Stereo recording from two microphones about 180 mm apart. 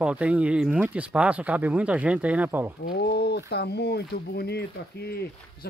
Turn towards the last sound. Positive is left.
turn(degrees=65)  # may be behind; listen again after turning